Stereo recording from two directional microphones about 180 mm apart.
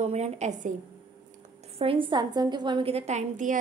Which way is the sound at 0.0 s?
35° right (ahead or behind).